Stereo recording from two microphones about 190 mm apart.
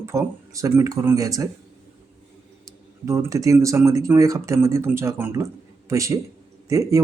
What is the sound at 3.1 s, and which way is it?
Speech, 15° right (ahead or behind).